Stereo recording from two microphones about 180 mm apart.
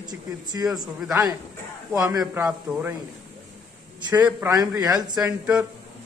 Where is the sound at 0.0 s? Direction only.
20° right (ahead or behind).